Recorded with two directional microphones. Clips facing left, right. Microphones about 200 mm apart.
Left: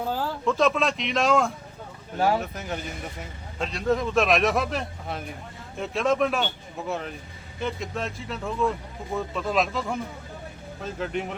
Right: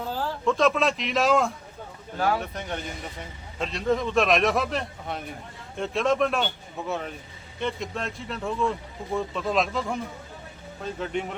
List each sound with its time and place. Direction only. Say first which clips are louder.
0.4 s a man's voice: right 1 dB; centre (ahead or behind)
2.1 s speech: left 2 dB; 25° left (ahead or behind)
2.4 s a man's voice: even; 5° left (ahead or behind)